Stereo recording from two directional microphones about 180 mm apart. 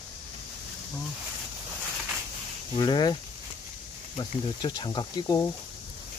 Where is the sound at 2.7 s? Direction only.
25° left (ahead or behind).